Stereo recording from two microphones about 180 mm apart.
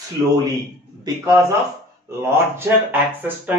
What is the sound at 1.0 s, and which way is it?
Speech, 15° right (ahead or behind).